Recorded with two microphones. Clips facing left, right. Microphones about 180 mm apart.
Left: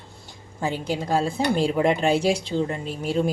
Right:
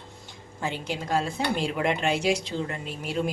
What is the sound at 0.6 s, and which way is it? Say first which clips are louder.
Speech: left 5 dB; 35° left (ahead or behind).